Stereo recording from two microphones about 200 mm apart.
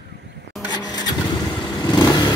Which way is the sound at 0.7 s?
20° left (ahead or behind).